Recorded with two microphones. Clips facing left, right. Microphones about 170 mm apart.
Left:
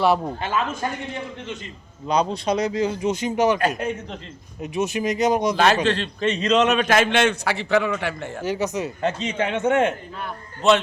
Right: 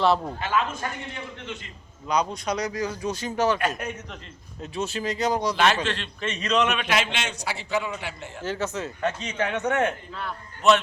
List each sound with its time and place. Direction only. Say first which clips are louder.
0.0 s speech: left 2 dB; 15° left (ahead or behind)
0.3 s speech: left 1 dB; 30° left (ahead or behind)
2.0 s speech: left 4 dB; 30° left (ahead or behind)
3.8 s speech: left 7 dB; 30° left (ahead or behind)
4.6 s speech: left 5 dB; 15° left (ahead or behind)
5.8 s a man's voice: left 8 dB; 35° left (ahead or behind); by 8.3 s 60° left (ahead or behind)
8.4 s a man's voice: left 4 dB; 15° left (ahead or behind); by 10.8 s 30° left (ahead or behind)